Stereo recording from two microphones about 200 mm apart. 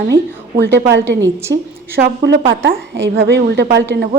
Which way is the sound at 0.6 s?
60° right (ahead or behind).